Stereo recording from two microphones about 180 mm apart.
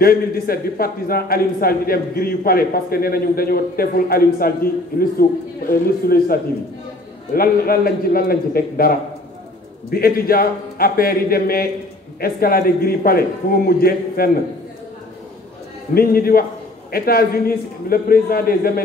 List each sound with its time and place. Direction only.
0.0 s a man's voice: 55° left (ahead or behind)
15.9 s a man's voice: 55° left (ahead or behind)